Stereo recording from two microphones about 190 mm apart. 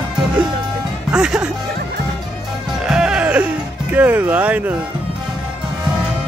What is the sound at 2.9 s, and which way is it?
Music, 5° right (ahead or behind).